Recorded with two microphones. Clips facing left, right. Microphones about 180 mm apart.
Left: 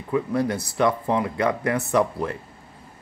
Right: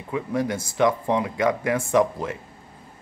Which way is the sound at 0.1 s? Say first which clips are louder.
Left 2 dB; 15° right (ahead or behind).